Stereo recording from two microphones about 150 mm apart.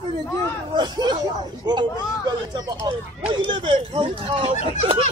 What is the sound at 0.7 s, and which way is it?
Speech, 30° right (ahead or behind).